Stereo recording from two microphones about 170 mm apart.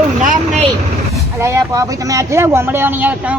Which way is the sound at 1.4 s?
20° right (ahead or behind).